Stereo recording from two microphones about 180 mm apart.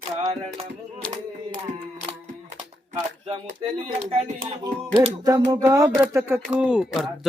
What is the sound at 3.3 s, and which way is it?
Speech, 30° right (ahead or behind).